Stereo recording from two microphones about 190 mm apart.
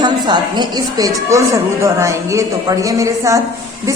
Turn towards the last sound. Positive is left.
turn(degrees=-15)  # may be behind; listen again after turning